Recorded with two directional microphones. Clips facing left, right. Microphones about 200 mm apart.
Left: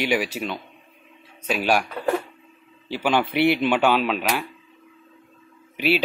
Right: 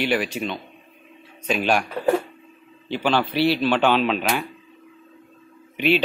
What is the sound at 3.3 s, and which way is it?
A man's voice, 20° left (ahead or behind).